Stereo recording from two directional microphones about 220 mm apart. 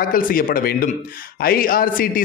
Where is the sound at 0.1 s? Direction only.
40° left (ahead or behind).